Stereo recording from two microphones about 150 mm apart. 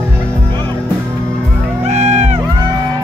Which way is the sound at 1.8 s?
50° right (ahead or behind).